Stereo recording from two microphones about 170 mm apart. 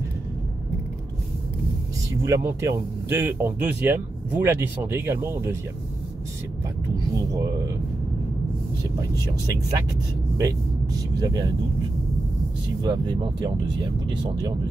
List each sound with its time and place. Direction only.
2.2 s speech: 15° right (ahead or behind)
7.2 s speech: 20° right (ahead or behind)
9.1 s speech: 20° right (ahead or behind)
12.8 s speech: 25° right (ahead or behind)